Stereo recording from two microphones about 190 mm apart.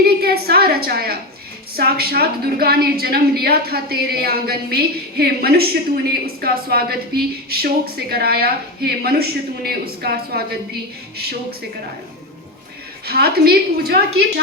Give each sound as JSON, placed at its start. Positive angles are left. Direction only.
{"t": 0.0, "sound": "a woman's voice", "side_deg": -55}
{"t": 13.1, "sound": "a woman's voice", "side_deg": -55}